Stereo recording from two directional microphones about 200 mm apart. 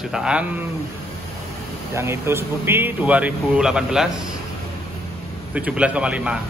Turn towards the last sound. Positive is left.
turn(degrees=-5)  # may be behind; listen again after turning